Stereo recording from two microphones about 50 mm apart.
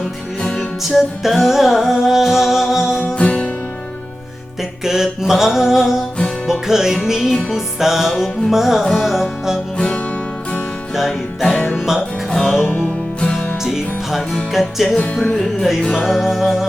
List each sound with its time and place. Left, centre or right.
0.8 s music: centre
3.2 s music: left
4.8 s mantra: centre
6.5 s music: centre
9.7 s music: centre
11.5 s music: left
12.3 s music: centre
13.6 s music: centre
15.1 s music: centre
15.9 s music: centre